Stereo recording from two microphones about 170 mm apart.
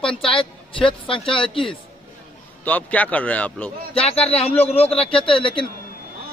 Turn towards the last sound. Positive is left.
turn(degrees=30)  # may be behind; listen again after turning